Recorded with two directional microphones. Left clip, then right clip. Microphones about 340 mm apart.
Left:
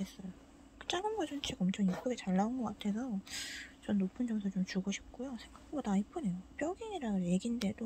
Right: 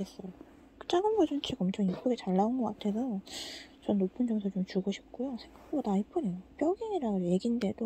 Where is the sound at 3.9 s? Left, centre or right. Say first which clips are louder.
Right 7 dB; left.